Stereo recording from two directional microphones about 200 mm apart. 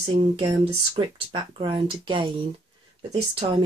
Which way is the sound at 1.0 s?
25° right (ahead or behind).